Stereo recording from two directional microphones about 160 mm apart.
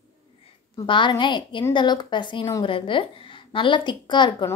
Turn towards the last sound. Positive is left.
turn(degrees=30)  # may be behind; listen again after turning